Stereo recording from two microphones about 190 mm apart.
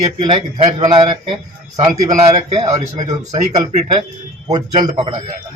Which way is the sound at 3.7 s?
35° right (ahead or behind).